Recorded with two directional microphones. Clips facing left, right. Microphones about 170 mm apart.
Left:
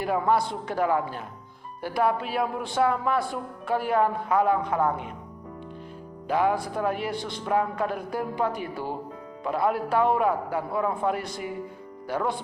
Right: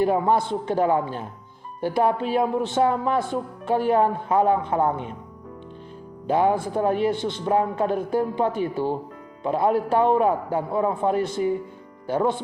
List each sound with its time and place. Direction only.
0.0 s a man's voice: 25° right (ahead or behind)
6.2 s a man's voice: 25° right (ahead or behind)